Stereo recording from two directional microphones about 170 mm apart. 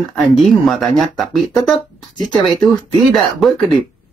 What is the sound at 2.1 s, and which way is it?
Speech, 25° left (ahead or behind).